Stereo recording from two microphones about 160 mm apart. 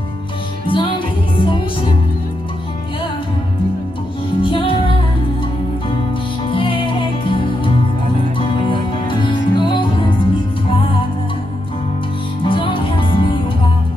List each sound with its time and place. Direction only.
0.7 s music: 30° left (ahead or behind)
4.4 s music: 30° left (ahead or behind)
6.5 s music: 35° left (ahead or behind)
12.4 s music: 30° left (ahead or behind)